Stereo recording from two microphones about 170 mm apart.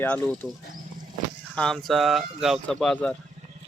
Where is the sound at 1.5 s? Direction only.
5° left (ahead or behind).